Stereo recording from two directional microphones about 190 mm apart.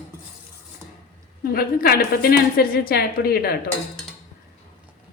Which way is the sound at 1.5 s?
55° left (ahead or behind).